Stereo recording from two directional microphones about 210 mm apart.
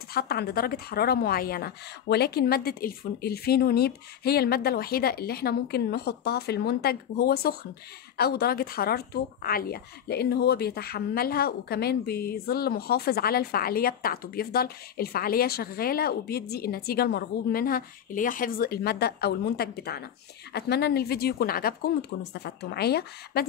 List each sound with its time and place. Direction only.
0.1 s a woman's voice: 50° left (ahead or behind)